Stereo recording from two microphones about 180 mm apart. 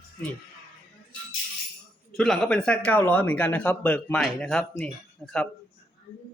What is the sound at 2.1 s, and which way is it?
Speech, centre (ahead or behind).